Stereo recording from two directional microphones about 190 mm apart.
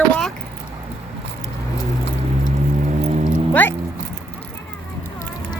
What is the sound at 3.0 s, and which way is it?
Cat, 35° right (ahead or behind).